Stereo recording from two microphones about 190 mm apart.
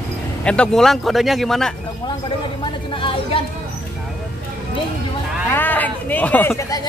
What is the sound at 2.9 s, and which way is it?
Chatter, 30° left (ahead or behind).